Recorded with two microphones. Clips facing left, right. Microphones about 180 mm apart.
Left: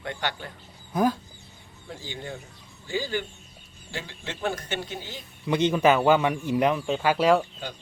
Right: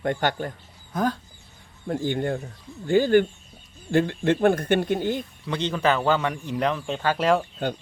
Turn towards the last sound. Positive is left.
turn(degrees=5)  # may be behind; listen again after turning